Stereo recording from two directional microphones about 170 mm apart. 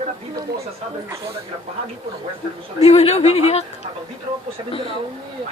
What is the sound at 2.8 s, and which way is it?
Speech, 40° left (ahead or behind).